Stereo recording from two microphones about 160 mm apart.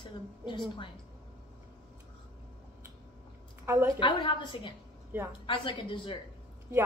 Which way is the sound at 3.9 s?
30° left (ahead or behind).